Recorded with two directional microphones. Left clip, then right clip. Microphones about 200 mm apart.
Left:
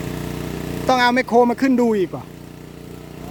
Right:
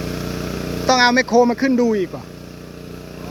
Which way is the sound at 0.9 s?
20° left (ahead or behind).